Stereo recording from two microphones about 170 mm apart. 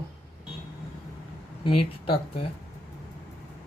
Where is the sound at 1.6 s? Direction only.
30° left (ahead or behind).